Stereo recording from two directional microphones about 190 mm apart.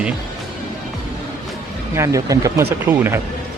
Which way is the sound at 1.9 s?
15° right (ahead or behind).